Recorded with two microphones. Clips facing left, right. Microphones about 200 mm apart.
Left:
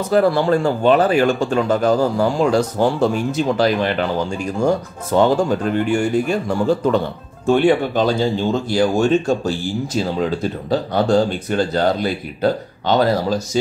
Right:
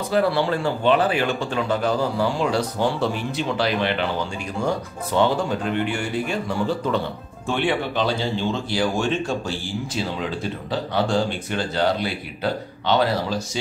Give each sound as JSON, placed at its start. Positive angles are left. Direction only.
{"t": 0.1, "sound": "speech", "side_deg": 45}
{"t": 5.1, "sound": "speech", "side_deg": 45}